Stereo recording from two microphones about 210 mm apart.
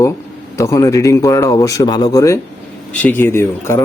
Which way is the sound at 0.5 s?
15° left (ahead or behind).